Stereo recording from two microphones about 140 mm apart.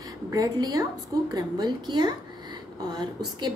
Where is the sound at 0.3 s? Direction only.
25° right (ahead or behind).